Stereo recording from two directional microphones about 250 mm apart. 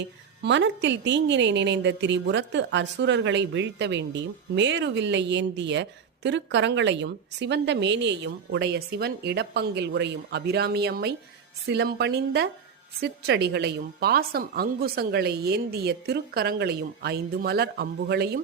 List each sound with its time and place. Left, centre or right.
0.0 s a woman's voice: right